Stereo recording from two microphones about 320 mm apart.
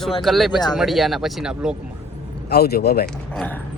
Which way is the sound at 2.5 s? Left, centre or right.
Left.